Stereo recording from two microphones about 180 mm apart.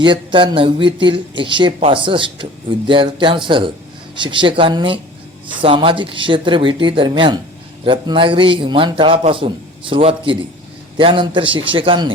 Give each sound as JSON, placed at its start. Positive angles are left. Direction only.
{"t": 0.0, "sound": "speech", "side_deg": -25}